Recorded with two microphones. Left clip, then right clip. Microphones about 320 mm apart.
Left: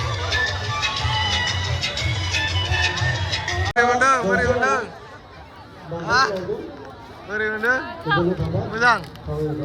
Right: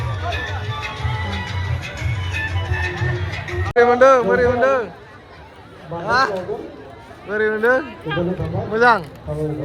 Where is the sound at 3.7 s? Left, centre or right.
Centre.